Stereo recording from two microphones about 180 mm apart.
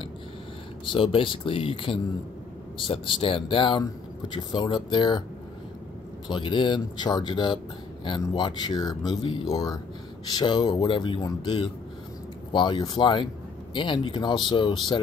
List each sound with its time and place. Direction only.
0.8 s speech: 30° left (ahead or behind)
6.2 s speech: 25° left (ahead or behind)